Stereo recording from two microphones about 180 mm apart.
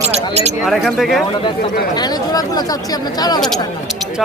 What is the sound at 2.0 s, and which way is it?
Speech, 20° left (ahead or behind).